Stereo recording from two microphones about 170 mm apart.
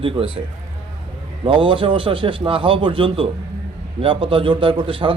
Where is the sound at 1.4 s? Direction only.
30° right (ahead or behind).